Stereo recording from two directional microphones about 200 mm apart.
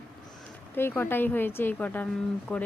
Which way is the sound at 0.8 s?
10° left (ahead or behind).